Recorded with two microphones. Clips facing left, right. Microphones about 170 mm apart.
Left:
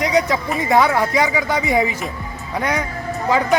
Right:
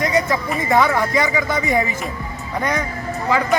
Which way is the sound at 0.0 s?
15° left (ahead or behind).